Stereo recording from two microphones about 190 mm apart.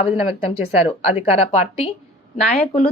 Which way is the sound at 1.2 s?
30° left (ahead or behind).